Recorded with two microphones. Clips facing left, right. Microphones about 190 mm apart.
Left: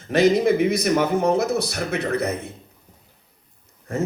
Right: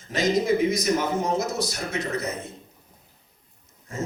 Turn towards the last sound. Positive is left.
turn(degrees=60)  # may be behind; listen again after turning